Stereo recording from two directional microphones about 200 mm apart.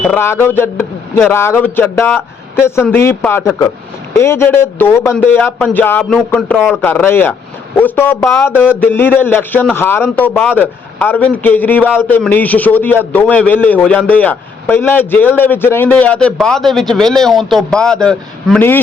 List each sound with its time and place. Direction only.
0.1 s a man's voice: 10° left (ahead or behind)